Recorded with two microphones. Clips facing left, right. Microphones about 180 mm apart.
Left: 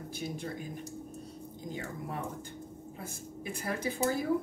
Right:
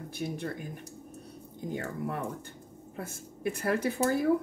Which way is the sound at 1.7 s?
60° right (ahead or behind).